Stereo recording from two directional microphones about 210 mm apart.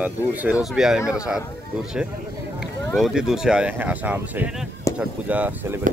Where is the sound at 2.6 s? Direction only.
Centre (ahead or behind).